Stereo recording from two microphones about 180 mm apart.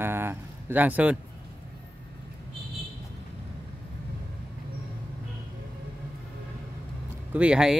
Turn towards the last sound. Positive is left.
turn(degrees=-5)  # may be behind; listen again after turning